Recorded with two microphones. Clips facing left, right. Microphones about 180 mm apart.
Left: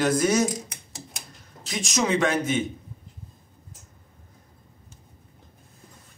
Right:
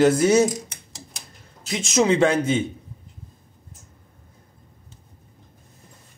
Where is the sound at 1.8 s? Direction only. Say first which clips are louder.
Right 5 dB; 25° right (ahead or behind).